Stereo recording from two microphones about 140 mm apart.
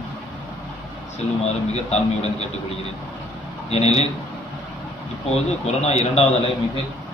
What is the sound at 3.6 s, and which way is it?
Speech, 50° left (ahead or behind).